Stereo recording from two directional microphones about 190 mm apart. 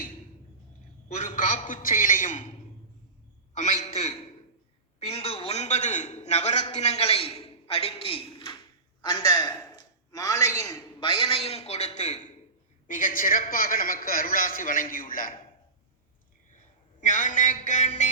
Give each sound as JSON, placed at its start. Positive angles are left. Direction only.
{"t": 1.0, "sound": "a man's voice", "side_deg": 40}
{"t": 3.5, "sound": "a man's voice", "side_deg": 40}
{"t": 11.0, "sound": "a man's voice", "side_deg": 30}
{"t": 17.0, "sound": "a man's voice", "side_deg": 40}